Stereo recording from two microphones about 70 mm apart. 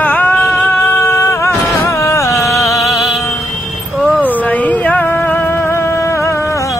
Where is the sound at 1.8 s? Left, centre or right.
Left.